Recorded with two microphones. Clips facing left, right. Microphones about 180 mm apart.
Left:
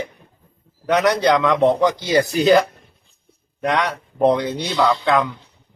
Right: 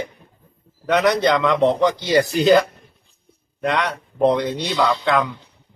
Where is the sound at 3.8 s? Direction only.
10° left (ahead or behind).